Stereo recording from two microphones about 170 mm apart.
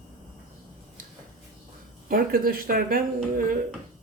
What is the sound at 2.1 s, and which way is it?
Speech, 60° right (ahead or behind).